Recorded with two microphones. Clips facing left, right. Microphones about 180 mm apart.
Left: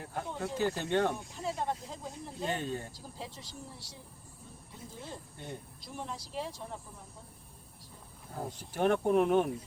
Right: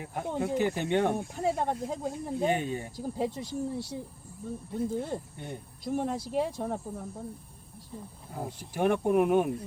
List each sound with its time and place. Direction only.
0.0 s speech: 15° right (ahead or behind)
1.1 s speech: 55° right (ahead or behind)
2.5 s speech: 15° right (ahead or behind)
2.9 s speech: 55° right (ahead or behind)
8.4 s speech: 5° right (ahead or behind)